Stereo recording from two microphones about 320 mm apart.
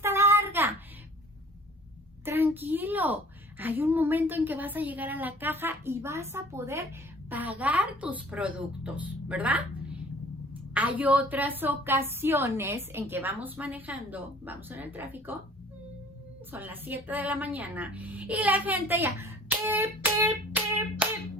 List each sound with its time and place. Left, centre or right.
0.0 s child singing: centre
2.2 s a child's voice: centre
16.5 s a woman's voice: centre